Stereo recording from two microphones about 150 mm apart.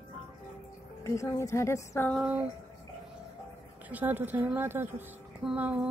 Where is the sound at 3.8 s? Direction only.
10° right (ahead or behind).